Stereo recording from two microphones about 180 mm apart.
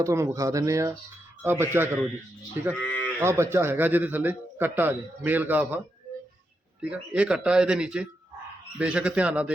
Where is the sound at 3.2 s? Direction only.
15° right (ahead or behind).